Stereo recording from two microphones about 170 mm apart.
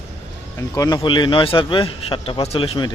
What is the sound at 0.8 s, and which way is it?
A man's voice, 25° left (ahead or behind).